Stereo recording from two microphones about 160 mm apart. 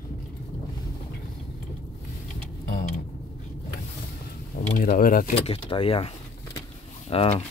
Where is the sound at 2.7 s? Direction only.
70° left (ahead or behind).